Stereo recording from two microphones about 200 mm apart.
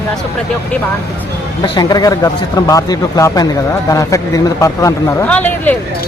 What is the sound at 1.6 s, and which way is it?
Speech, 20° left (ahead or behind).